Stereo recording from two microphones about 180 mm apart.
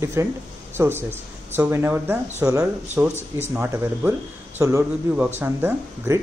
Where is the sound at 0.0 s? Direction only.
15° right (ahead or behind).